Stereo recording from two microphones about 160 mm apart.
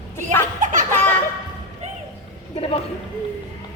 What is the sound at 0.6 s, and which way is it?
Baby laughter, 50° right (ahead or behind).